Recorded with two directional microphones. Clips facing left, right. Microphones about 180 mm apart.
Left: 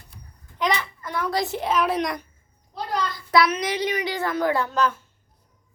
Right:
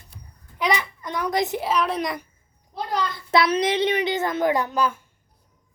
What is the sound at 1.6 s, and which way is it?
Speech, centre (ahead or behind).